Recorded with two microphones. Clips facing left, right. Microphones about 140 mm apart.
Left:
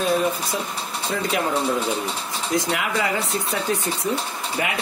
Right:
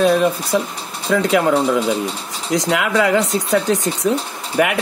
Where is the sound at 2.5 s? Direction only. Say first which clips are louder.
Right 6 dB; 85° right.